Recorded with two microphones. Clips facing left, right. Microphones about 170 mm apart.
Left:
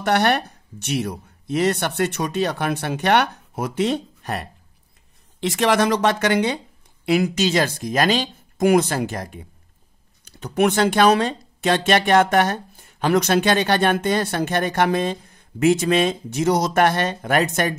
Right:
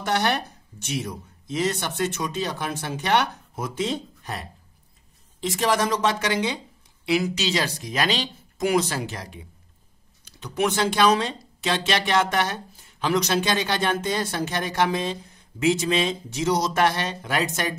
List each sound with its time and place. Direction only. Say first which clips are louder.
0.0 s speech: left 5 dB; 60° left (ahead or behind)